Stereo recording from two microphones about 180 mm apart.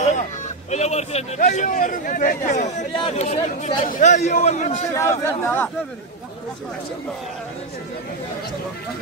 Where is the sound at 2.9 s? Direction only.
35° left (ahead or behind).